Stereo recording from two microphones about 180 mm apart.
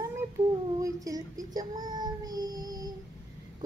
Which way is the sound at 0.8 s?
20° right (ahead or behind).